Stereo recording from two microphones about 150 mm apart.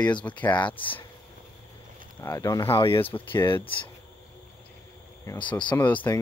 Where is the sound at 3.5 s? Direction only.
35° left (ahead or behind).